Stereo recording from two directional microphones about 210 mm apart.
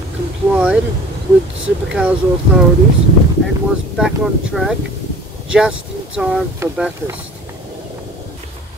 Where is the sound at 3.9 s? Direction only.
5° right (ahead or behind).